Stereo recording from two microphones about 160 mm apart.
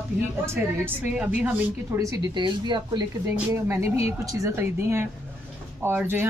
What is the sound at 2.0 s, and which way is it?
Speech, 30° right (ahead or behind).